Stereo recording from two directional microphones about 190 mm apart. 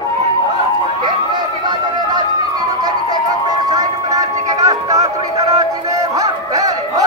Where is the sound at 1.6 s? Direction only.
20° right (ahead or behind).